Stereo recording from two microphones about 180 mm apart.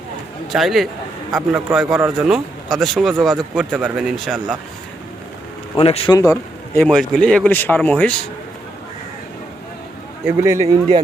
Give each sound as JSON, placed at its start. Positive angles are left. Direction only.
{"t": 0.5, "sound": "speech", "side_deg": 0}
{"t": 5.8, "sound": "speech", "side_deg": 35}
{"t": 6.1, "sound": "a man's voice", "side_deg": 20}
{"t": 6.7, "sound": "speech", "side_deg": 5}
{"t": 10.2, "sound": "speech", "side_deg": -15}